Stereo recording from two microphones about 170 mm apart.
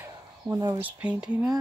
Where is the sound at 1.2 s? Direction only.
20° right (ahead or behind).